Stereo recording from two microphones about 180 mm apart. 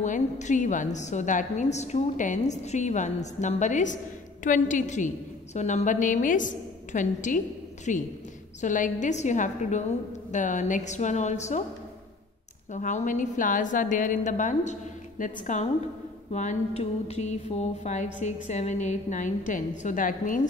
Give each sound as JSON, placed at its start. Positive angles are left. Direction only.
{"t": 0.0, "sound": "a woman's voice", "side_deg": 40}
{"t": 12.7, "sound": "a woman's voice", "side_deg": 45}